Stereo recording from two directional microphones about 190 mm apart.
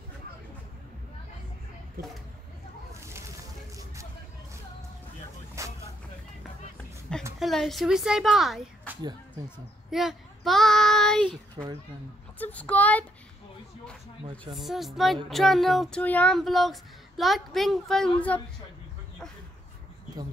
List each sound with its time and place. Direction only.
2.9 s a sound: 15° right (ahead or behind)
5.6 s vehicle: 15° right (ahead or behind)
7.3 s speech: centre (ahead or behind)
9.8 s child singing: centre (ahead or behind)
11.2 s a child's voice: 25° right (ahead or behind)
12.4 s a child's voice: 10° left (ahead or behind)
14.5 s a sound: centre (ahead or behind)